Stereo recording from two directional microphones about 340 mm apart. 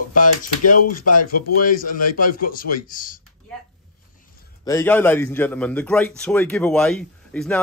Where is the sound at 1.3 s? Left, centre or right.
Left.